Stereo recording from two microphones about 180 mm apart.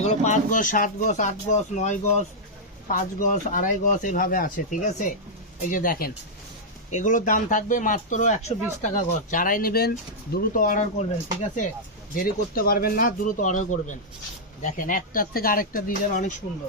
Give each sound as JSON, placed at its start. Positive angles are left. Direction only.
{"t": 0.0, "sound": "speech", "side_deg": 40}